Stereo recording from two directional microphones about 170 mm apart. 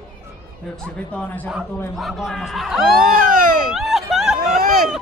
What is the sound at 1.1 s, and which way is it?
A man's voice, 10° left (ahead or behind).